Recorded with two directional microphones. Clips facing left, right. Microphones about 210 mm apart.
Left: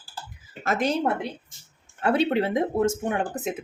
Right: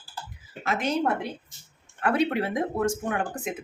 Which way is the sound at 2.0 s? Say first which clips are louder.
Left 2 dB; 25° left (ahead or behind).